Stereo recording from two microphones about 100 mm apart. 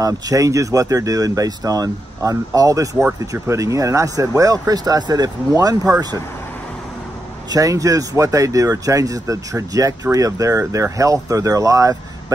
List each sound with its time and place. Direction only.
0.0 s speech: 35° right (ahead or behind)
7.5 s speech: 35° right (ahead or behind)